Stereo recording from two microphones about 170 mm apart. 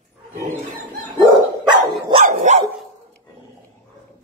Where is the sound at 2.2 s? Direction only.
45° right (ahead or behind).